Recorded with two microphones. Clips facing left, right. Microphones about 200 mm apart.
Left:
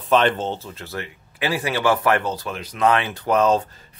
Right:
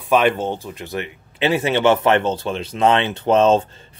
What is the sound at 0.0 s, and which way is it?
Speech, 10° right (ahead or behind).